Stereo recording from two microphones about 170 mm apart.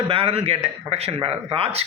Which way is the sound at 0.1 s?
35° right (ahead or behind).